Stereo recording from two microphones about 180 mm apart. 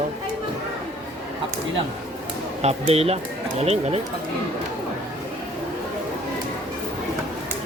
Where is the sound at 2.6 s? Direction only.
35° right (ahead or behind).